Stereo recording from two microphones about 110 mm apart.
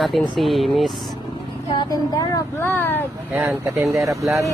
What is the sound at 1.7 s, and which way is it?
Speech, 40° left (ahead or behind).